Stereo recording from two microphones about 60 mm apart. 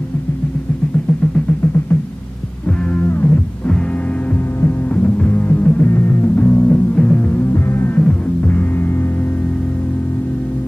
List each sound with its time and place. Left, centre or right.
3.0 s music: left
4.6 s music: left
5.0 s music: left
7.3 s music: left
7.9 s music: left